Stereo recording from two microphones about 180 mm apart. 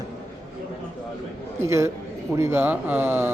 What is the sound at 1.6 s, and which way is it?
Speech, 15° right (ahead or behind).